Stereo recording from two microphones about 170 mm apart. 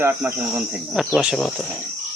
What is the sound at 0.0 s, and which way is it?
Speech, 15° right (ahead or behind).